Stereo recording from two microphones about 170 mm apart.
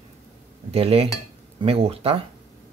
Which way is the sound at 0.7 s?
35° right (ahead or behind).